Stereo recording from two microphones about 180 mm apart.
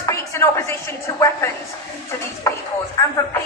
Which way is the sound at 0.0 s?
15° left (ahead or behind).